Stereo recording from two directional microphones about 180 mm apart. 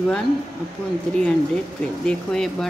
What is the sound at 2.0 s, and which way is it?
Speech, 5° left (ahead or behind).